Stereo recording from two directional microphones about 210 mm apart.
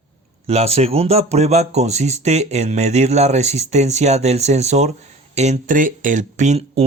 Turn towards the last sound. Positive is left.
turn(degrees=-30)  # may be behind; listen again after turning